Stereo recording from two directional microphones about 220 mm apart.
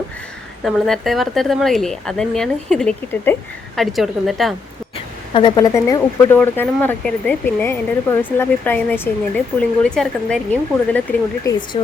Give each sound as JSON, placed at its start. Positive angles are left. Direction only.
{"t": 0.6, "sound": "speech", "side_deg": 0}
{"t": 5.3, "sound": "speech", "side_deg": 20}
{"t": 11.5, "sound": "speech", "side_deg": 15}